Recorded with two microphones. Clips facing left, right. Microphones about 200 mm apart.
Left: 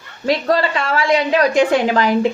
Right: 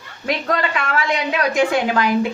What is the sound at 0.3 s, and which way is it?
A woman's voice, 30° left (ahead or behind).